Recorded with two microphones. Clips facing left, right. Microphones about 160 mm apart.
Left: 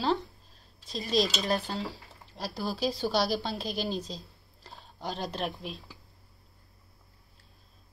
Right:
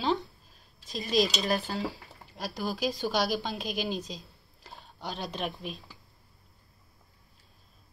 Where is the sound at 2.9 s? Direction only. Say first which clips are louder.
Left 1 dB; 35° left (ahead or behind).